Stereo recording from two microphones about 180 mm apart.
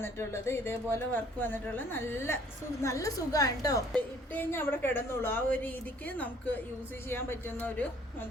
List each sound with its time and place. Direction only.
0.0 s a woman's voice: 15° left (ahead or behind)